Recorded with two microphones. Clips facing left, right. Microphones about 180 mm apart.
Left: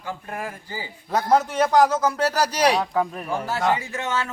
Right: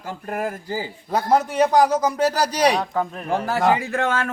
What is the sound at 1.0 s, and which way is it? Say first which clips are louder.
Speech: even; 10° right (ahead or behind).